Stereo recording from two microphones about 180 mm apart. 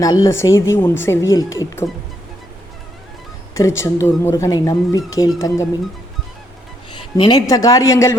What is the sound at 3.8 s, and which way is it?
Speech, 15° left (ahead or behind).